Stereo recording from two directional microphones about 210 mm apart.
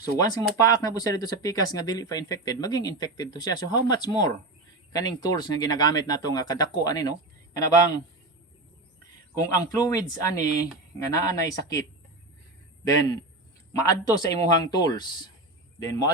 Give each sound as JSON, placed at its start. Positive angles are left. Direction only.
{"t": 0.0, "sound": "speech", "side_deg": 15}
{"t": 9.3, "sound": "a man's voice", "side_deg": 15}